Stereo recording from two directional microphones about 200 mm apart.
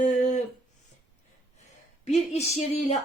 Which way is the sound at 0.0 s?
35° left (ahead or behind).